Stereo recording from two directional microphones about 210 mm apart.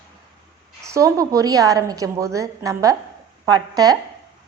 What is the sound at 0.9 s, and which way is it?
A woman's voice, 15° right (ahead or behind).